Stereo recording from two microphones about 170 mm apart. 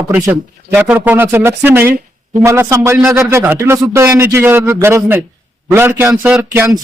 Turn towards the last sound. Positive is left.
turn(degrees=-15)  # may be behind; listen again after turning